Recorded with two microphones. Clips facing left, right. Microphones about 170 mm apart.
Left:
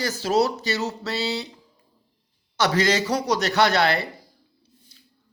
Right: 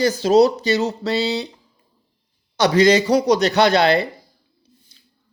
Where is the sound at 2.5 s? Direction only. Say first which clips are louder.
Right 7 dB; 20° right (ahead or behind).